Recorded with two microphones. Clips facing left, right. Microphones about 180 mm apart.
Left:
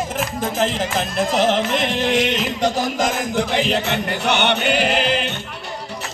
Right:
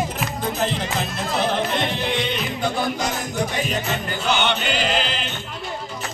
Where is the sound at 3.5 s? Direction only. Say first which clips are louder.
Left 5 dB; 75° left (ahead or behind).